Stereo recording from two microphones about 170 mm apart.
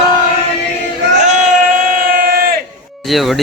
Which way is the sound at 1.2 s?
45° right (ahead or behind).